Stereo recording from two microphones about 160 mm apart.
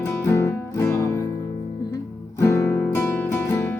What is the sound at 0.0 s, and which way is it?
Music, 15° left (ahead or behind).